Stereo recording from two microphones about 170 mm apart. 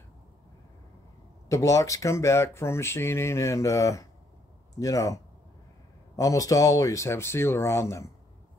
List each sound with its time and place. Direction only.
1.5 s speech: 20° left (ahead or behind)